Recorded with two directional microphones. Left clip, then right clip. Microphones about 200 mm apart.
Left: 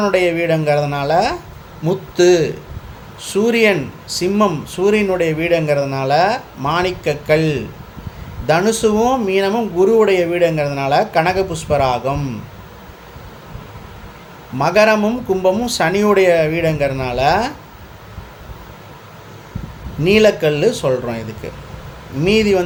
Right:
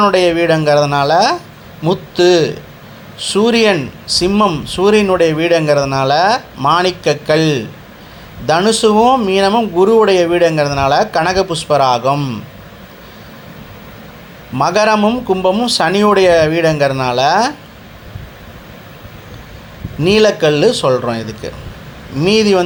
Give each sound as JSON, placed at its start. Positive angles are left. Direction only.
{"t": 0.0, "sound": "speech", "side_deg": -15}
{"t": 14.6, "sound": "speech", "side_deg": -15}
{"t": 20.1, "sound": "speech", "side_deg": -15}